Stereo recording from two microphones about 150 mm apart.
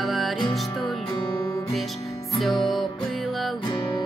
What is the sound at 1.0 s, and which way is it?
Music, 25° left (ahead or behind).